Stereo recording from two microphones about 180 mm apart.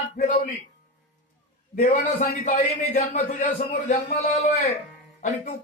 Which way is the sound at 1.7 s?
45° left (ahead or behind).